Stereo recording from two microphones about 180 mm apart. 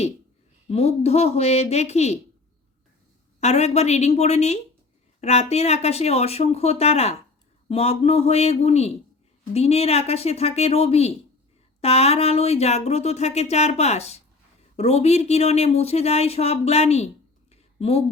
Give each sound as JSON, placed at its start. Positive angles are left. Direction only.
{"t": 0.7, "sound": "speech", "side_deg": 35}
{"t": 3.4, "sound": "speech", "side_deg": 35}
{"t": 17.5, "sound": "a sound", "side_deg": 35}